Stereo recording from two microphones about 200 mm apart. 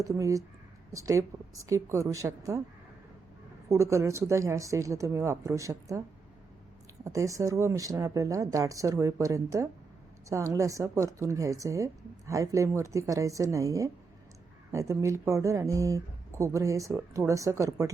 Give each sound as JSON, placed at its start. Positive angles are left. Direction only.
{"t": 0.0, "sound": "a woman's voice", "side_deg": -15}
{"t": 3.7, "sound": "a woman's voice", "side_deg": -15}
{"t": 7.0, "sound": "a woman's voice", "side_deg": -15}